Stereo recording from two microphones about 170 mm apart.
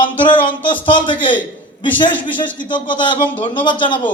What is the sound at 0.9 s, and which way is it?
Speech, 30° left (ahead or behind).